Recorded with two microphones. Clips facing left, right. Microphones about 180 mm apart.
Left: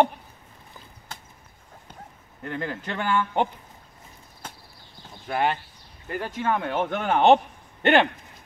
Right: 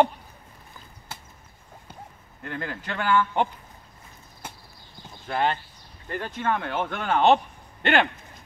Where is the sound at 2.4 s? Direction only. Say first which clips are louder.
Left 2 dB; 20° left (ahead or behind).